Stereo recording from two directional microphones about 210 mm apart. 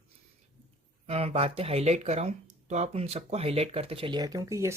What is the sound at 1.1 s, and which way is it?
Speech, 25° right (ahead or behind).